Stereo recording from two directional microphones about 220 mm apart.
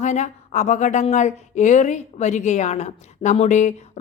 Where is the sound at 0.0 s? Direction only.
30° left (ahead or behind).